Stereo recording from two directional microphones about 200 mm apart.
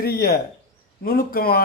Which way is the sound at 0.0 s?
50° left (ahead or behind).